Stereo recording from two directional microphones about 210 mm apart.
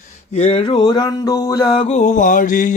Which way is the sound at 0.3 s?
25° left (ahead or behind).